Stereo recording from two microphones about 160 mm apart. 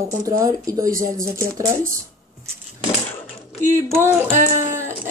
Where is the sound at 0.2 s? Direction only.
20° right (ahead or behind).